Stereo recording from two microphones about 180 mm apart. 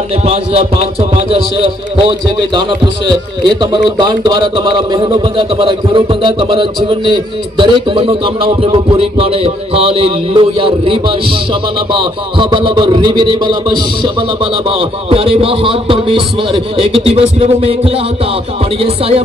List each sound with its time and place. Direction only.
0.2 s a man's voice: 35° right (ahead or behind)